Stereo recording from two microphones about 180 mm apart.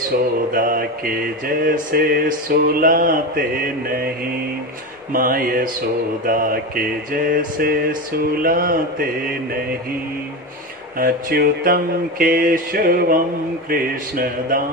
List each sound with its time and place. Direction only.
0.5 s mantra: 50° right (ahead or behind)
11.0 s mantra: 55° right (ahead or behind)